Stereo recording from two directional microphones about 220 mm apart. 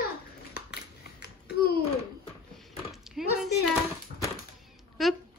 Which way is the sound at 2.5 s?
Centre (ahead or behind).